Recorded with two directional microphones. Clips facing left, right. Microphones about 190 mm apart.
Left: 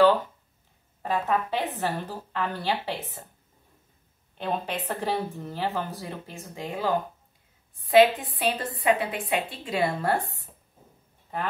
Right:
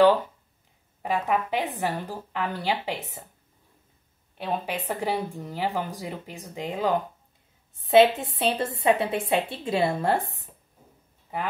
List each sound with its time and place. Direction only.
1.0 s speech: 15° right (ahead or behind)
4.4 s a woman's voice: 10° right (ahead or behind)
11.3 s speech: 10° right (ahead or behind)